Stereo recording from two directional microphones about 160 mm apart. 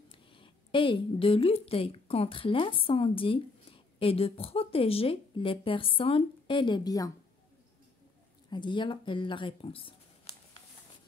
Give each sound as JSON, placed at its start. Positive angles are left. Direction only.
{"t": 0.1, "sound": "speech", "side_deg": 30}
{"t": 8.5, "sound": "speech", "side_deg": 30}